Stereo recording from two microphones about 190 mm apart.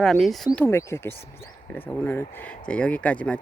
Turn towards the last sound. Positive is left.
turn(degrees=5)  # may be behind; listen again after turning